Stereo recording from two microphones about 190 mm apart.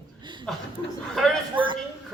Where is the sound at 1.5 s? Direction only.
25° right (ahead or behind).